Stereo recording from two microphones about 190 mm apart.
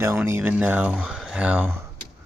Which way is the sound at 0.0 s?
15° right (ahead or behind).